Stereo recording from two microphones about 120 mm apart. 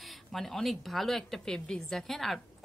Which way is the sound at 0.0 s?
Centre (ahead or behind).